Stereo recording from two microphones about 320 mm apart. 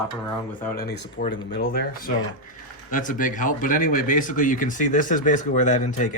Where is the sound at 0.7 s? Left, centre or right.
Left.